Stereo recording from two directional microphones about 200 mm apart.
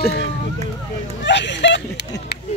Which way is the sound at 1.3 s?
60° left (ahead or behind).